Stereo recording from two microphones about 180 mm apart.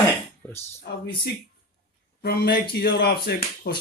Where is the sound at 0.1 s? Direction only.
15° left (ahead or behind).